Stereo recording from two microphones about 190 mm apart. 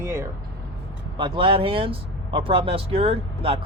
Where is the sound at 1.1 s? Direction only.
25° right (ahead or behind).